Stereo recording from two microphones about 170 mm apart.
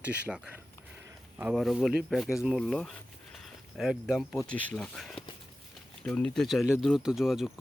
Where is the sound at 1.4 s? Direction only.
5° right (ahead or behind).